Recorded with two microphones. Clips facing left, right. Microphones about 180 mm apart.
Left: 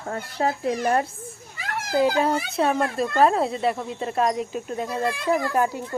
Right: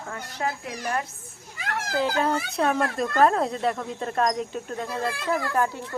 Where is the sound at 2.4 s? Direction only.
Centre (ahead or behind).